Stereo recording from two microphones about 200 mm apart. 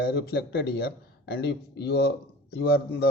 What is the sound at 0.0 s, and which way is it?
Speech, 55° left (ahead or behind).